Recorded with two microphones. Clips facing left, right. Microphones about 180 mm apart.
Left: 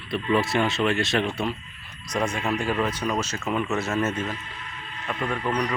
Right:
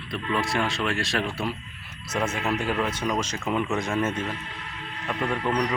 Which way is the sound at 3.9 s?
10° right (ahead or behind).